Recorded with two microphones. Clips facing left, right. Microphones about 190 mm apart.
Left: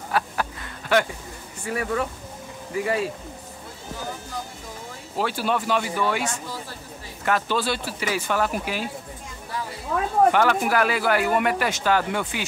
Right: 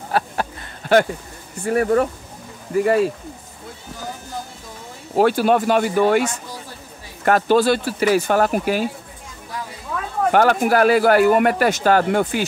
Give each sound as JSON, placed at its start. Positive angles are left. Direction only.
{"t": 0.1, "sound": "a sound", "side_deg": -35}
{"t": 1.6, "sound": "speech", "side_deg": -45}
{"t": 5.1, "sound": "speech", "side_deg": -50}
{"t": 7.2, "sound": "speech", "side_deg": -45}
{"t": 10.3, "sound": "speech", "side_deg": -45}